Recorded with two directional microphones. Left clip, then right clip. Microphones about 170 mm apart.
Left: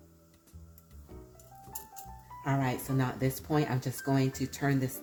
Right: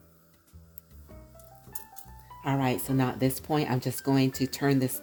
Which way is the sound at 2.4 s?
65° right (ahead or behind).